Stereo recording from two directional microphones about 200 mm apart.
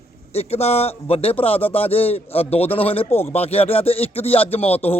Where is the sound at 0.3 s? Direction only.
30° left (ahead or behind).